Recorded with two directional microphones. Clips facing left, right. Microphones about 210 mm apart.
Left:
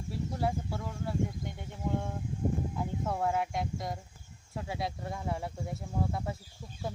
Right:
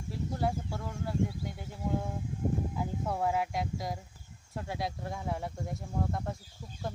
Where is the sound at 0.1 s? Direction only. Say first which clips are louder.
Even; centre (ahead or behind).